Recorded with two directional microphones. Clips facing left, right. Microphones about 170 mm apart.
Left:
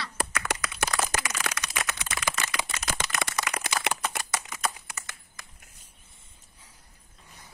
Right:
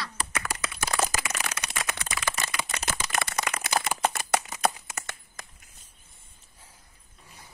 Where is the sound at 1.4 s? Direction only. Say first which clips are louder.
Left 2 dB; 60° left (ahead or behind).